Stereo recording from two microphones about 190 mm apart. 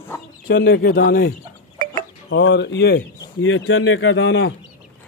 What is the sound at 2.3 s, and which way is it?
Speech, 65° left (ahead or behind).